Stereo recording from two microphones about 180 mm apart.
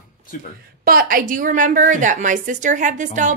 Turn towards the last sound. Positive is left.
turn(degrees=-45)  # may be behind; listen again after turning